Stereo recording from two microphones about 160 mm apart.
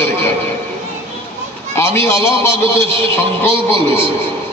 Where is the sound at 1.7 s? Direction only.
15° left (ahead or behind).